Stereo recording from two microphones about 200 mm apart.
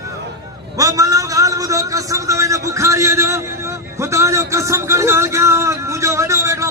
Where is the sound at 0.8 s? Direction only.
15° right (ahead or behind).